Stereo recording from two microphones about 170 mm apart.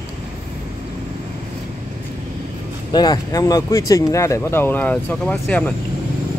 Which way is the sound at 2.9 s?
20° left (ahead or behind).